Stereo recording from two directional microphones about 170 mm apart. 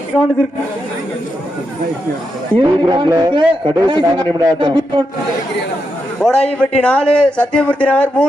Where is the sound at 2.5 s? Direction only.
30° right (ahead or behind).